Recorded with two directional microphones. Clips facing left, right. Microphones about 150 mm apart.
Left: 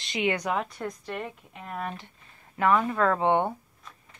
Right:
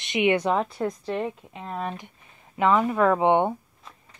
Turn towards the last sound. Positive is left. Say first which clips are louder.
# right 4 dB
turn(degrees=-15)  # may be behind; listen again after turning